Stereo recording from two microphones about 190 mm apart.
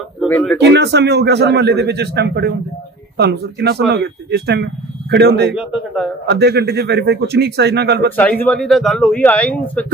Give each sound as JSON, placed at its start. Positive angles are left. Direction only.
{"t": 0.3, "sound": "speech", "side_deg": 10}
{"t": 0.6, "sound": "speech", "side_deg": -60}
{"t": 5.5, "sound": "speech", "side_deg": -5}
{"t": 6.2, "sound": "speech", "side_deg": -60}
{"t": 8.2, "sound": "speech", "side_deg": 10}